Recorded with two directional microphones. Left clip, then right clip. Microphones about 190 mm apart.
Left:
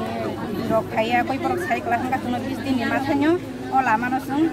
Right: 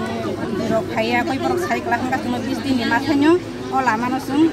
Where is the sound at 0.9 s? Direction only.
Centre (ahead or behind).